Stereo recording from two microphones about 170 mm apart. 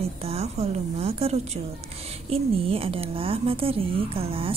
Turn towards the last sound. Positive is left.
turn(degrees=-35)  # may be behind; listen again after turning